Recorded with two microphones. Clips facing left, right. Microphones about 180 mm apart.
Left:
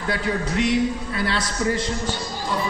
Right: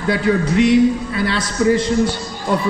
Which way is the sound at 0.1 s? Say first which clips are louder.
Right 8 dB; 90° right.